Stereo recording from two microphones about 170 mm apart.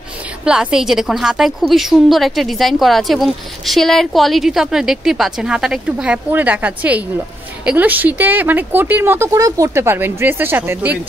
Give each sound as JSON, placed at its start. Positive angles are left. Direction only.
{"t": 0.5, "sound": "a woman's voice", "side_deg": -5}